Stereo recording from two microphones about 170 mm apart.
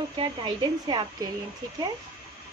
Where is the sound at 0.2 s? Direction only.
30° right (ahead or behind).